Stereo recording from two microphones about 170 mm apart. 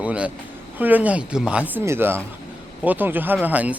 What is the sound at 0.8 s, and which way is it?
A man's voice, 10° right (ahead or behind).